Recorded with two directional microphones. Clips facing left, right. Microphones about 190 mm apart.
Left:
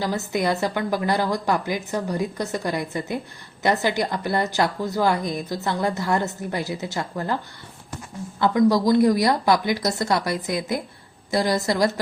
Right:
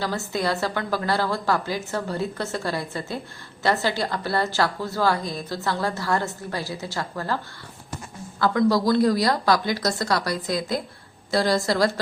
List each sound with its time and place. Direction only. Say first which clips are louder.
0.0 s a woman's voice: left 2 dB; 20° left (ahead or behind)
8.4 s a woman's voice: left 2 dB; 20° left (ahead or behind)